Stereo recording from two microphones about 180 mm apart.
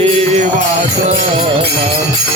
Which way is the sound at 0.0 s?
40° right (ahead or behind).